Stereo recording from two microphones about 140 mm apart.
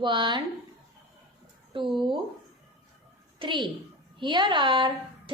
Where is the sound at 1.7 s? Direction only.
40° right (ahead or behind).